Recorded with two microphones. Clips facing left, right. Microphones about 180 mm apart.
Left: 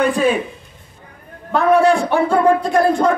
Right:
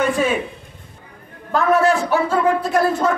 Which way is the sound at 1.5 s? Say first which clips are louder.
Left 3 dB; centre (ahead or behind).